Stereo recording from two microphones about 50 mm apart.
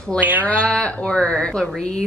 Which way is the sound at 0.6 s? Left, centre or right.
Centre.